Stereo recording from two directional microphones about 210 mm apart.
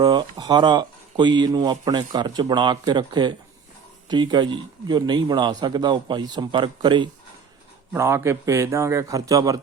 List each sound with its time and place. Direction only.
0.0 s a man's voice: 20° right (ahead or behind)